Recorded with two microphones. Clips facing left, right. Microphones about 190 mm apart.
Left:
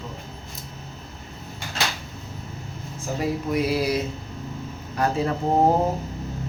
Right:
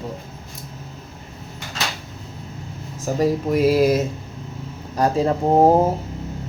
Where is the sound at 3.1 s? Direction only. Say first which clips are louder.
Right 5 dB; 45° right (ahead or behind).